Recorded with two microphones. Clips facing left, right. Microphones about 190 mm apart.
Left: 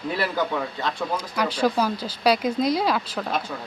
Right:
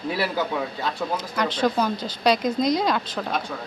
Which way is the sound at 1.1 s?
10° left (ahead or behind).